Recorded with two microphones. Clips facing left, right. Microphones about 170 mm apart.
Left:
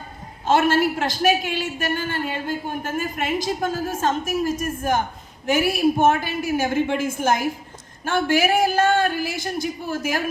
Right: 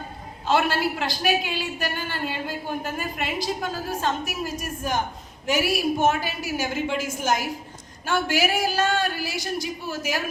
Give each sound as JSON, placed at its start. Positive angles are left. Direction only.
{"t": 0.4, "sound": "a man's voice", "side_deg": 45}